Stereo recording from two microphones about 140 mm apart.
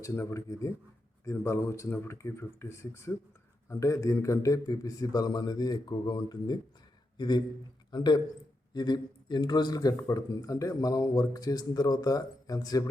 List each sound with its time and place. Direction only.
0.0 s a man's voice: 20° left (ahead or behind)